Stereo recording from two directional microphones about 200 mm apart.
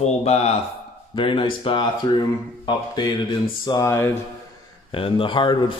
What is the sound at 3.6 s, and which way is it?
Speech, 15° left (ahead or behind).